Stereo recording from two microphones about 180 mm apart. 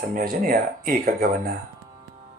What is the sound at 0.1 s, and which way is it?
Music, 50° right (ahead or behind).